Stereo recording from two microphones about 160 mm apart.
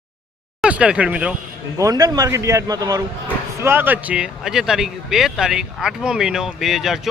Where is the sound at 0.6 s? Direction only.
5° right (ahead or behind).